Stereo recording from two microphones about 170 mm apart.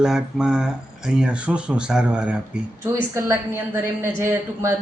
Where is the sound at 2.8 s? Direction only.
15° right (ahead or behind).